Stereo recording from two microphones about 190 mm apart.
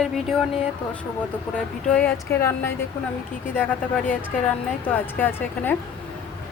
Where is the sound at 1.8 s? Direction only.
5° left (ahead or behind).